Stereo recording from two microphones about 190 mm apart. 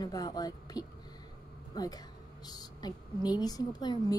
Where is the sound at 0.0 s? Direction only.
20° left (ahead or behind).